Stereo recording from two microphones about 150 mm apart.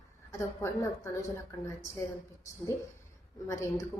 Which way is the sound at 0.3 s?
20° left (ahead or behind).